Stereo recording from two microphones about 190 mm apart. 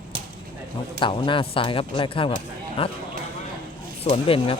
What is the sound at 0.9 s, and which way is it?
Speech, 25° left (ahead or behind).